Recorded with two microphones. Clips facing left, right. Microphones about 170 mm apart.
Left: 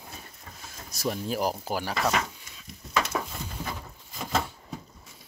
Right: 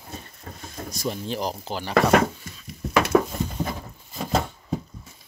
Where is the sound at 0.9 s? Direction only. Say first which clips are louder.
Even; 5° left (ahead or behind).